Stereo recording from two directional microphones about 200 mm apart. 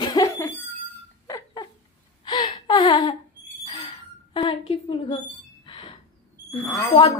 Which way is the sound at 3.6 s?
25° left (ahead or behind).